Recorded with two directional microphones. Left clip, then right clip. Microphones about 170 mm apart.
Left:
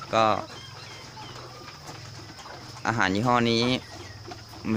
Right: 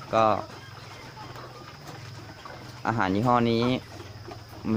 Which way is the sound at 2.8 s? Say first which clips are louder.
Left 1 dB; centre (ahead or behind).